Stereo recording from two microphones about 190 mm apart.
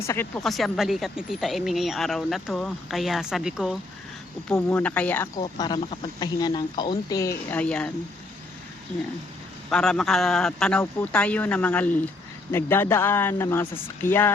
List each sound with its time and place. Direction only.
0.0 s speech: 15° left (ahead or behind)
0.4 s speech: centre (ahead or behind)
5.4 s speech: 25° left (ahead or behind); by 7.9 s 5° left (ahead or behind)
9.6 s speech: 5° left (ahead or behind)